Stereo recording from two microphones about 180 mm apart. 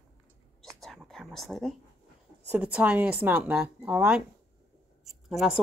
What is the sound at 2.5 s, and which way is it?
A woman's voice, 10° right (ahead or behind).